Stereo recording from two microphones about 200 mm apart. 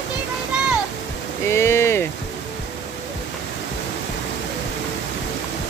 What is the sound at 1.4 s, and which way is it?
Speech, 15° left (ahead or behind).